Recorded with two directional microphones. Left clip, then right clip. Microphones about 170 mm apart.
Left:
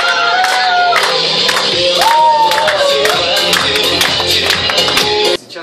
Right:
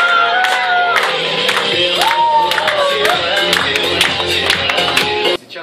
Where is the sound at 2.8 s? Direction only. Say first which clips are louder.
Left 2 dB; 10° right (ahead or behind).